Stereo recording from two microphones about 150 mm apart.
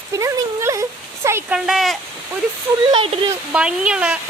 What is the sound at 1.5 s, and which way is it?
Speech, centre (ahead or behind).